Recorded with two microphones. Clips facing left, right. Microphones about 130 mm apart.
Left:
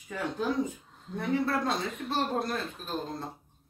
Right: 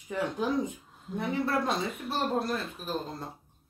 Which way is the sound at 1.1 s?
10° right (ahead or behind).